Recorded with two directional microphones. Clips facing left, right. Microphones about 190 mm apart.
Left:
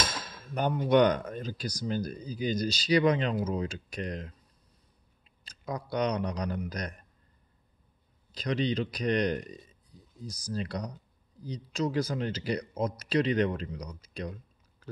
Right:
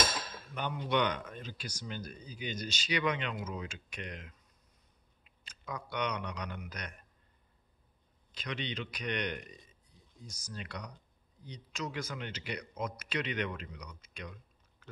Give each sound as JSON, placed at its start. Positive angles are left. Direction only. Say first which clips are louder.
{"t": 0.6, "sound": "speech", "louder": "left 9 dB", "side_deg": 45}
{"t": 8.3, "sound": "speech", "louder": "left 10 dB", "side_deg": 35}